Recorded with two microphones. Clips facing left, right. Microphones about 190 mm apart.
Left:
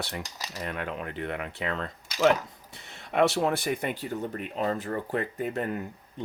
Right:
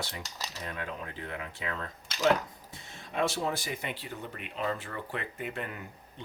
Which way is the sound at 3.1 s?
65° left (ahead or behind).